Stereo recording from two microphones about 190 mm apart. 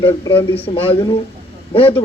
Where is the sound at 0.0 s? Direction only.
25° left (ahead or behind).